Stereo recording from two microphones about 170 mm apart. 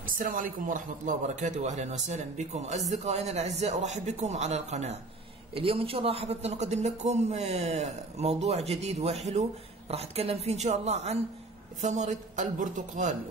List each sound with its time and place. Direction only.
0.0 s a man's voice: 55° right (ahead or behind)